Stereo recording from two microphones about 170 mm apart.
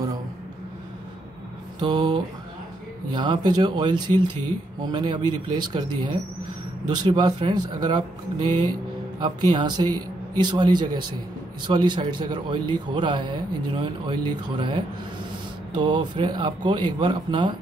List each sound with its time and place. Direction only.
1.8 s a man's voice: 25° right (ahead or behind)